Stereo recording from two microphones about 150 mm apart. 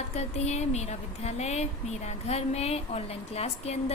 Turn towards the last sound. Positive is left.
turn(degrees=45)  # may be behind; listen again after turning